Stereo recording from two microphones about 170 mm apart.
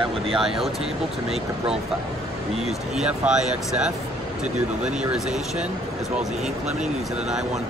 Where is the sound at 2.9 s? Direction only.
5° right (ahead or behind).